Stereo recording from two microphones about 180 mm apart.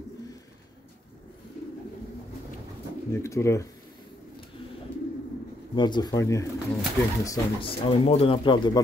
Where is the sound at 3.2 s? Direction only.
15° left (ahead or behind).